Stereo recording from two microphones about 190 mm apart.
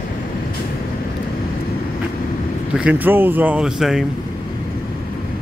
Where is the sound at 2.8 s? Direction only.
10° right (ahead or behind).